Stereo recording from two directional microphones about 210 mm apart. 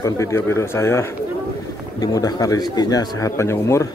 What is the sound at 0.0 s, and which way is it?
A man's voice, 15° left (ahead or behind).